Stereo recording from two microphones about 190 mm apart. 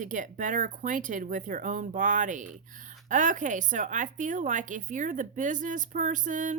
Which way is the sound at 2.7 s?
40° right (ahead or behind).